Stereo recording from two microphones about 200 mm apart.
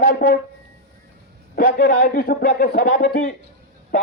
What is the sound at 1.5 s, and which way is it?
A man's voice, 50° left (ahead or behind).